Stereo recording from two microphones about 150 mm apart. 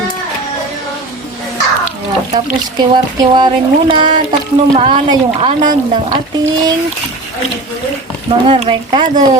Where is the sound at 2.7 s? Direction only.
30° right (ahead or behind).